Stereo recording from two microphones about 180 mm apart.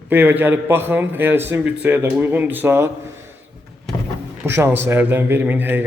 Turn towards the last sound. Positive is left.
turn(degrees=-10)  # may be behind; listen again after turning